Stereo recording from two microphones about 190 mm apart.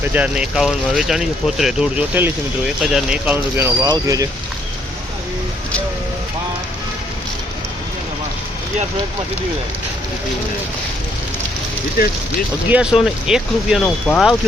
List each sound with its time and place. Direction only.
0.0 s speech: 5° right (ahead or behind)
12.0 s speech: 50° left (ahead or behind)
12.7 s speech: 5° right (ahead or behind)